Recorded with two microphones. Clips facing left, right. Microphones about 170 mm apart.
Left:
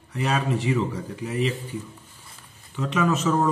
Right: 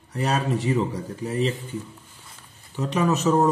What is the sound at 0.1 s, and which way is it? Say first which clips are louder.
Speech: right 1 dB; 40° right (ahead or behind).